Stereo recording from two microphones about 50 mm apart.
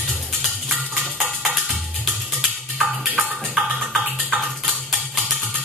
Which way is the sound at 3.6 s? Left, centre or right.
Centre.